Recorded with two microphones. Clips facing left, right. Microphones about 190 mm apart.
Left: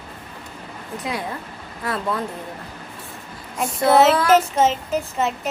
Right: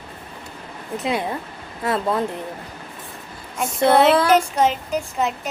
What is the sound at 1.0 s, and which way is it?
Speech, 25° right (ahead or behind).